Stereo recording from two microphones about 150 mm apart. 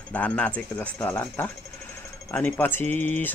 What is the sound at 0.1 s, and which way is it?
Speech, 10° left (ahead or behind).